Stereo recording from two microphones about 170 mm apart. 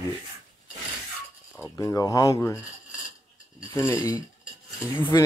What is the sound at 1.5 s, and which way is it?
Speech, 15° left (ahead or behind).